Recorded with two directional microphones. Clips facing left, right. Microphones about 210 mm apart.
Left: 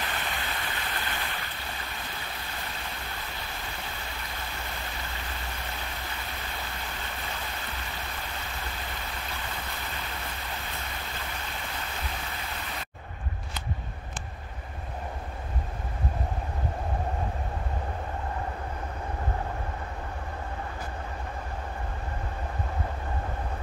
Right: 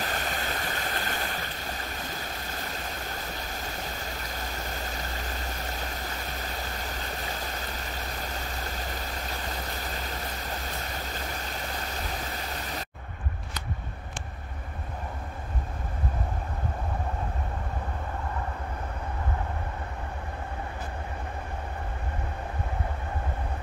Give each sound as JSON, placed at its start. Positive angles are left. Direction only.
{"t": 0.0, "sound": "stream", "side_deg": -40}
{"t": 3.7, "sound": "stream", "side_deg": -40}
{"t": 7.9, "sound": "vehicle", "side_deg": -40}